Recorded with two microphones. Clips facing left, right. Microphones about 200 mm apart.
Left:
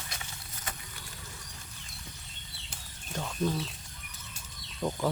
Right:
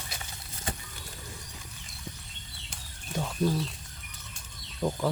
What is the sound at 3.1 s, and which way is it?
Speech, 5° right (ahead or behind).